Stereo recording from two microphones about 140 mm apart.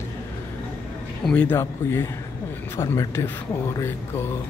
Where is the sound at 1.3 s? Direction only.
10° left (ahead or behind).